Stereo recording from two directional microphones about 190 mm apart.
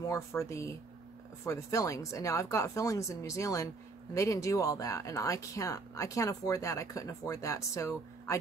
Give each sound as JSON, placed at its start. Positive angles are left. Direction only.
{"t": 0.0, "sound": "speech", "side_deg": 15}